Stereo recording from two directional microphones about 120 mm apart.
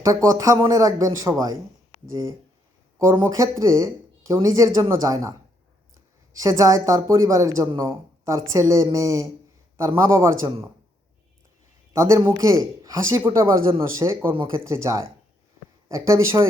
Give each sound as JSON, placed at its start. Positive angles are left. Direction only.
{"t": 0.0, "sound": "a man's voice", "side_deg": -30}
{"t": 3.1, "sound": "a man's voice", "side_deg": -25}
{"t": 6.4, "sound": "a man's voice", "side_deg": -30}
{"t": 11.9, "sound": "a man's voice", "side_deg": -25}